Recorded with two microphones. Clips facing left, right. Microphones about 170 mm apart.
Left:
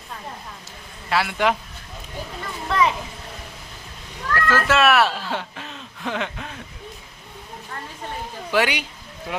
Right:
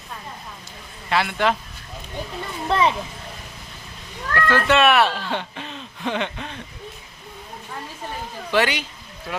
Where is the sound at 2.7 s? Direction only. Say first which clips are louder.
Right 1 dB; 30° right (ahead or behind).